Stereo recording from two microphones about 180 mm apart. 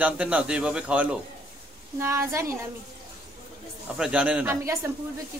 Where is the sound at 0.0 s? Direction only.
5° right (ahead or behind).